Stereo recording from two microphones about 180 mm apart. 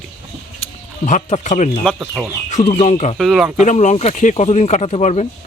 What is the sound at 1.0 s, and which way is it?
Speech, 45° left (ahead or behind).